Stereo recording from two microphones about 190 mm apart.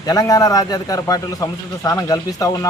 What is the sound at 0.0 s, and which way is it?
A man's voice, 20° left (ahead or behind).